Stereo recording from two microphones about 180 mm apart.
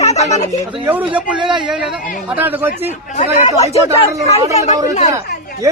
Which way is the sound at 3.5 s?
35° left (ahead or behind).